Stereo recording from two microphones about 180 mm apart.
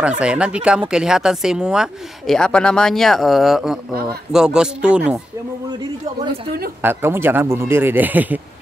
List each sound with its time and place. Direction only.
0.2 s speech: 5° right (ahead or behind)
6.8 s speech: 10° right (ahead or behind)